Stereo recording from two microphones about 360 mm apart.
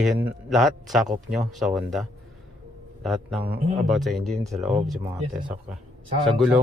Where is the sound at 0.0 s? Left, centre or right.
Centre.